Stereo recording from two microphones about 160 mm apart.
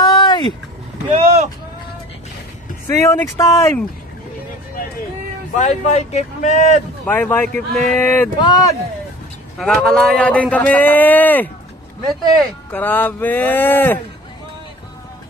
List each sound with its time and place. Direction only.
0.0 s vehicle: 25° left (ahead or behind)
1.0 s speech: 45° right (ahead or behind)
2.9 s speech: 15° left (ahead or behind)
5.5 s speech: 45° left (ahead or behind)
7.1 s speech: 15° left (ahead or behind)
8.4 s speech: 25° left (ahead or behind)
9.6 s speech: 5° left (ahead or behind)
12.7 s speech: 10° left (ahead or behind)